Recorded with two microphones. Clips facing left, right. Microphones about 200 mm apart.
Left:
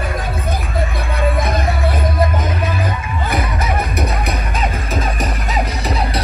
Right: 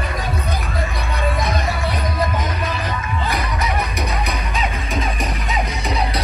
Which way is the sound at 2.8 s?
55° left (ahead or behind).